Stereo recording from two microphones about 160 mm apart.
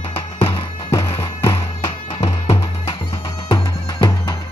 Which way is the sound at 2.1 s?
40° left (ahead or behind).